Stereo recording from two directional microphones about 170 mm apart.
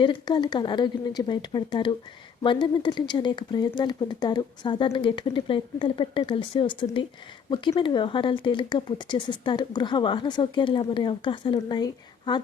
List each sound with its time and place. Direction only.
0.0 s speech: 25° left (ahead or behind)